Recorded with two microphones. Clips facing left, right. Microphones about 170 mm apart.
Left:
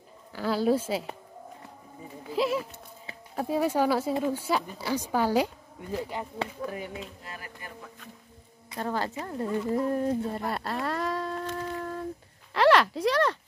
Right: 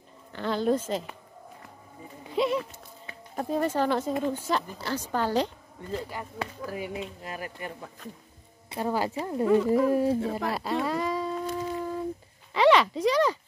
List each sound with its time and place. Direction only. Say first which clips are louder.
0.3 s speech: left 1 dB; 5° left (ahead or behind)
2.2 s speech: right 1 dB; centre (ahead or behind)
6.0 s speech: left 2 dB; 25° left (ahead or behind)
6.6 s speech: right 3 dB; 5° right (ahead or behind)
7.2 s speech: right 7 dB; 20° right (ahead or behind)
8.7 s speech: right 3 dB; 10° right (ahead or behind)
10.5 s humming: right 3 dB; centre (ahead or behind)
12.5 s speech: right 1 dB; centre (ahead or behind)